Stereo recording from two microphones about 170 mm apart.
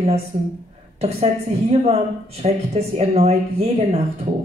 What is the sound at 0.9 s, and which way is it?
A woman's voice, 40° right (ahead or behind).